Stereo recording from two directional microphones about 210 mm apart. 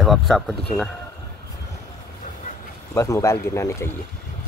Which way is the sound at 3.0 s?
15° left (ahead or behind).